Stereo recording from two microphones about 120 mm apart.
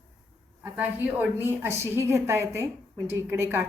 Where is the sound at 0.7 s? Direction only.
15° right (ahead or behind).